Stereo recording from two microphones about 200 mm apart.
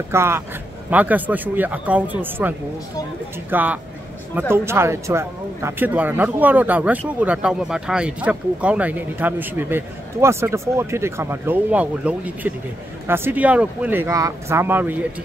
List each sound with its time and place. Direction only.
0.1 s speech: 10° right (ahead or behind)